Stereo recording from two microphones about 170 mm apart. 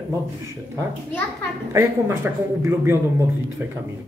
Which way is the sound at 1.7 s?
15° right (ahead or behind).